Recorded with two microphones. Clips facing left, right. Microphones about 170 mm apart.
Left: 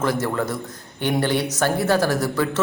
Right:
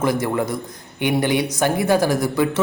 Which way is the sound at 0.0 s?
15° right (ahead or behind).